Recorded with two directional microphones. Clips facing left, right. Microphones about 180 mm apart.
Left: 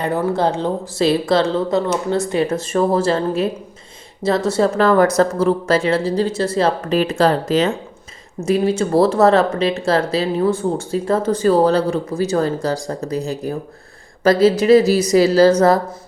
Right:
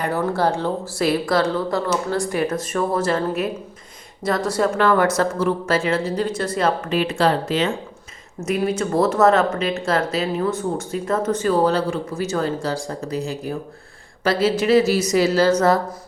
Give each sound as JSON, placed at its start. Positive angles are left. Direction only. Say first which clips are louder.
{"t": 0.3, "sound": "speech", "louder": "left 2 dB", "side_deg": 20}
{"t": 4.8, "sound": "speech", "louder": "left 4 dB", "side_deg": 35}
{"t": 8.4, "sound": "speech", "louder": "left 4 dB", "side_deg": 30}